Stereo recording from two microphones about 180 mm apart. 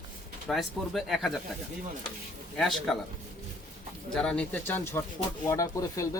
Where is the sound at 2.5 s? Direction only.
Centre (ahead or behind).